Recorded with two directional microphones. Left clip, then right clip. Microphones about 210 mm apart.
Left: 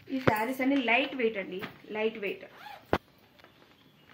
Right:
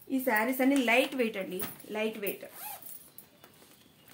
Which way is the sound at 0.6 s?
45° right (ahead or behind).